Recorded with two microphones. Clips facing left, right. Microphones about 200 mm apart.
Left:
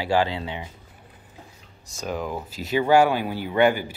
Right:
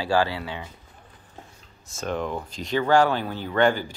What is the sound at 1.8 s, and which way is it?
Speech, centre (ahead or behind).